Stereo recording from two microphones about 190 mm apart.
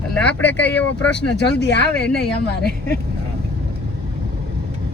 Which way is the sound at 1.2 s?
65° left (ahead or behind).